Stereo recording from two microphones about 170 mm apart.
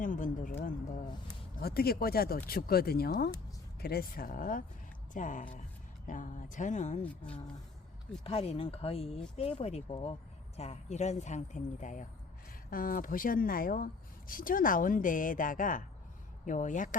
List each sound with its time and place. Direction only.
0.0 s a sound: 50° left (ahead or behind)
1.5 s speech: 65° left (ahead or behind); by 7.0 s 45° left (ahead or behind)
8.2 s speech: 35° left (ahead or behind)